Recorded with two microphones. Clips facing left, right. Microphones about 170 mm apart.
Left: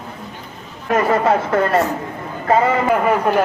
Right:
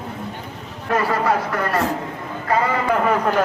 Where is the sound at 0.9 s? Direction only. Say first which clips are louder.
Left 4 dB; 25° left (ahead or behind).